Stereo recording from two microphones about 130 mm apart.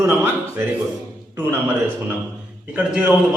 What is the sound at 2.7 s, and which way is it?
Speech, 10° right (ahead or behind).